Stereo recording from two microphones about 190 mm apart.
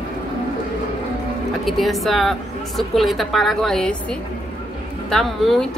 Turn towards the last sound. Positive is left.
turn(degrees=0)  # may be behind; listen again after turning